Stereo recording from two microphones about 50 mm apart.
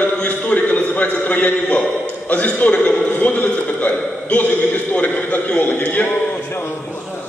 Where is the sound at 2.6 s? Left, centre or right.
Left.